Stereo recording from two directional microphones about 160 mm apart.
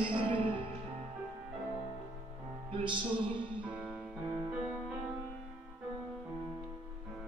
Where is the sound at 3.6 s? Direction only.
10° right (ahead or behind).